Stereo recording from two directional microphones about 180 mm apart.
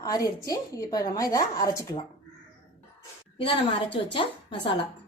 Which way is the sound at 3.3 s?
30° left (ahead or behind).